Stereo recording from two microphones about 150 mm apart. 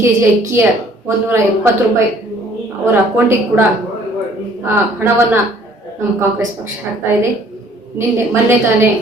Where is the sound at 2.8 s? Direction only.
15° right (ahead or behind).